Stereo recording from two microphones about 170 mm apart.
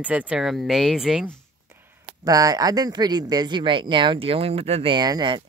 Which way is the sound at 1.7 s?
15° right (ahead or behind).